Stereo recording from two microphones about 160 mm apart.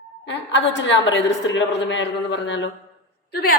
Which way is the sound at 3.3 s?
65° left (ahead or behind).